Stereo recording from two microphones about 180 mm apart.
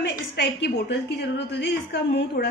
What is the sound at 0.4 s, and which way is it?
A woman's voice, 65° left (ahead or behind).